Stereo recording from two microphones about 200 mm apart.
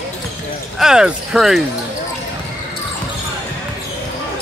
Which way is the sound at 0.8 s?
5° right (ahead or behind).